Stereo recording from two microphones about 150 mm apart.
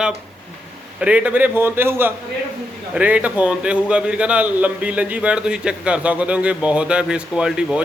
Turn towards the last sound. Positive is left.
turn(degrees=-5)  # may be behind; listen again after turning